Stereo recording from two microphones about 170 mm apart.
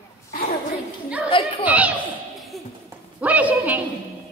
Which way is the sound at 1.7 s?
10° right (ahead or behind).